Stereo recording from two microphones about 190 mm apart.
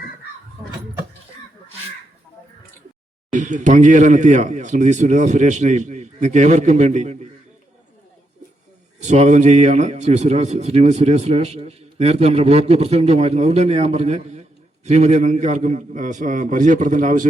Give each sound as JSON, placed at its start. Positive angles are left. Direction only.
{"t": 3.3, "sound": "a man's voice", "side_deg": -40}
{"t": 9.0, "sound": "a man's voice", "side_deg": -35}